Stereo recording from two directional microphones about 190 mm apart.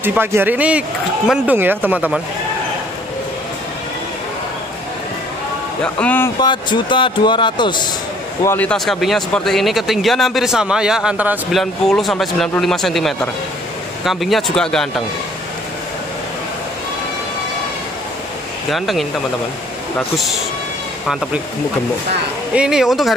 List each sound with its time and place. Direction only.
0.0 s speech: 10° right (ahead or behind)
5.9 s speech: 10° left (ahead or behind)
6.4 s speech: 25° left (ahead or behind)
8.5 s speech: 5° left (ahead or behind)
18.7 s speech: centre (ahead or behind)
22.5 s speech: 5° right (ahead or behind)